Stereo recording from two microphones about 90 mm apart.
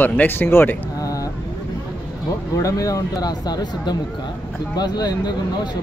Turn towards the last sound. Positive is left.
turn(degrees=50)  # may be behind; listen again after turning